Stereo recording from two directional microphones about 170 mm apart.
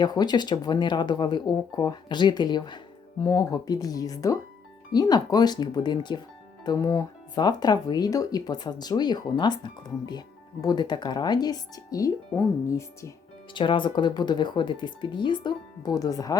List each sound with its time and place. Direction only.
0.0 s speech: 25° left (ahead or behind)
13.5 s speech: 30° left (ahead or behind)